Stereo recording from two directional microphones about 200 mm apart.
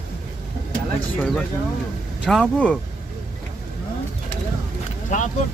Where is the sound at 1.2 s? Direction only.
5° left (ahead or behind).